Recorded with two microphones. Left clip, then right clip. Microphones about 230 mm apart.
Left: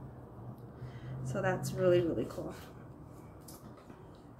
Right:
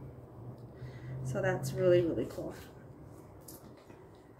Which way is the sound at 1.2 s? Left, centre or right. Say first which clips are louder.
Right 1 dB; centre.